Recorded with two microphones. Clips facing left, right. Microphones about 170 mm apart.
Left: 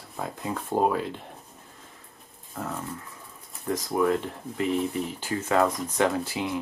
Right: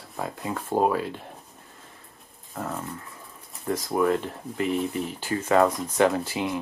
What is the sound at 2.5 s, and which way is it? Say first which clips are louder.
Dog: right 1 dB; centre (ahead or behind).